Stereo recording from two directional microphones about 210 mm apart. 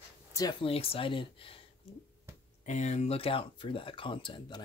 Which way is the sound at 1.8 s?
25° left (ahead or behind).